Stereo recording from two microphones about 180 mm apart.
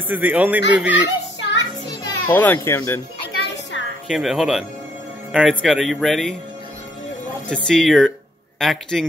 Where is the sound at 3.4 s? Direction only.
75° left (ahead or behind).